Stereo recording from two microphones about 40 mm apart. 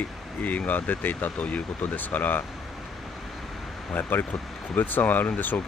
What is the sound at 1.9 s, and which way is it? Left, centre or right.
Speech, left.